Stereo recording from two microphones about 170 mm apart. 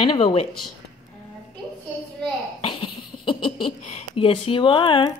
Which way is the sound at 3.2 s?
30° left (ahead or behind).